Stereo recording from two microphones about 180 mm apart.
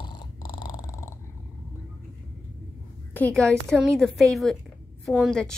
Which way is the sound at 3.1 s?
5° left (ahead or behind).